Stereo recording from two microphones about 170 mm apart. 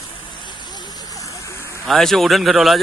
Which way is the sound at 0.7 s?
20° left (ahead or behind).